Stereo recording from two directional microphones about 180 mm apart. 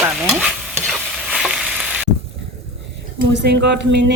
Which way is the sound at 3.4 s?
70° right (ahead or behind).